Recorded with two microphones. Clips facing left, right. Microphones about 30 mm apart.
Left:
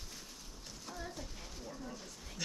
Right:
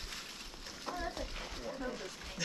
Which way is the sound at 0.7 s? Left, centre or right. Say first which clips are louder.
Right 6 dB; right.